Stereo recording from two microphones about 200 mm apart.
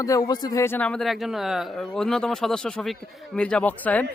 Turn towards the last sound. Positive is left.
turn(degrees=10)  # may be behind; listen again after turning